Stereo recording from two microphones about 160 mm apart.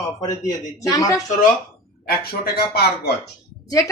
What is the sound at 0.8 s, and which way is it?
Speech, 20° left (ahead or behind).